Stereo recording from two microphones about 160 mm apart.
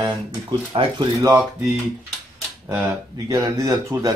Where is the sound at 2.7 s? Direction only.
20° right (ahead or behind).